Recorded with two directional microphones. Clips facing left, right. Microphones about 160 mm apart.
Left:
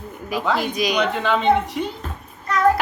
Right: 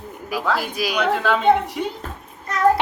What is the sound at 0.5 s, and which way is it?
A woman's voice, 5° right (ahead or behind).